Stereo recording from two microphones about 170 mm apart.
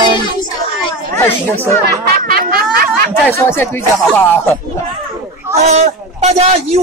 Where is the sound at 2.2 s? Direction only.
60° right (ahead or behind).